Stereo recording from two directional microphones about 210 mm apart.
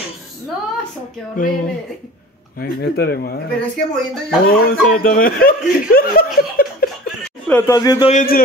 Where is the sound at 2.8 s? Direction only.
50° left (ahead or behind).